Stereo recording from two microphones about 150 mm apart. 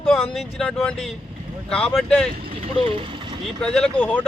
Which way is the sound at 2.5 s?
35° right (ahead or behind).